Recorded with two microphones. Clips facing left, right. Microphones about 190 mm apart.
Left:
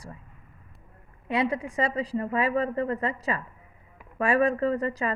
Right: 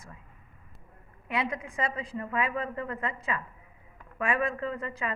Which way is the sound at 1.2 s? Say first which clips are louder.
Left 6 dB; 30° left (ahead or behind).